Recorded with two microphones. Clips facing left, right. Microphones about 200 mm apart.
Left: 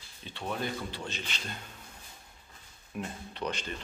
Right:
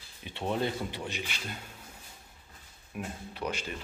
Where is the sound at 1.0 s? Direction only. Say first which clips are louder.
Right 2 dB; 10° right (ahead or behind).